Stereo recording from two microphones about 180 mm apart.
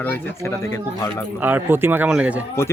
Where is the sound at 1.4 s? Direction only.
10° right (ahead or behind).